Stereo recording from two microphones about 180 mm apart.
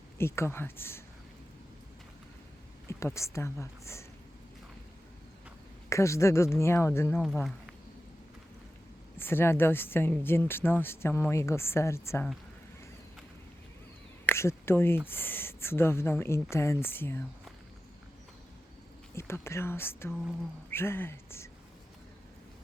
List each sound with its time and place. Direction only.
0.2 s speech: 15° left (ahead or behind)
2.8 s speech: 15° left (ahead or behind)
5.9 s speech: 15° left (ahead or behind)
9.1 s speech: 15° left (ahead or behind)
14.3 s speech: 15° left (ahead or behind)
19.1 s speech: 15° left (ahead or behind)